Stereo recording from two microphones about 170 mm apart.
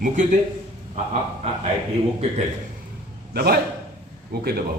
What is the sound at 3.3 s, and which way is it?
A man's voice, 65° right (ahead or behind).